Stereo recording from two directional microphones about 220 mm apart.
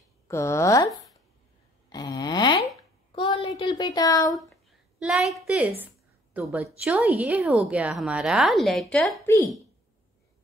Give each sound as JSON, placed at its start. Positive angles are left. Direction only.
{"t": 0.3, "sound": "speech", "side_deg": 15}
{"t": 1.9, "sound": "grunt", "side_deg": 20}
{"t": 3.1, "sound": "child singing", "side_deg": 25}
{"t": 4.4, "sound": "a woman's voice", "side_deg": 0}